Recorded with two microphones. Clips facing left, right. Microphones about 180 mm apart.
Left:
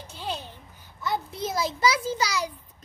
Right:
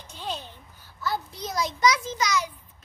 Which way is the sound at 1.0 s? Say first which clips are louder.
Left 2 dB; 25° left (ahead or behind).